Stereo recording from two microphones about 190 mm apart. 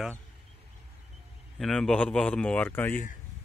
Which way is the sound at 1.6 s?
5° left (ahead or behind).